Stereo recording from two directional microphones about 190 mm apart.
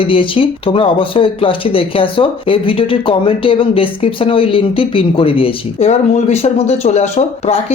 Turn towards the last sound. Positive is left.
turn(degrees=35)  # may be behind; listen again after turning